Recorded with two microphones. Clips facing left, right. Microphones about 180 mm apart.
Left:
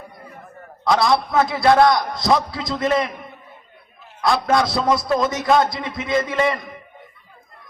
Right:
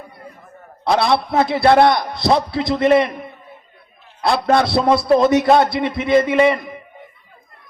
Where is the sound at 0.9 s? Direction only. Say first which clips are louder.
Right 2 dB; 60° right (ahead or behind).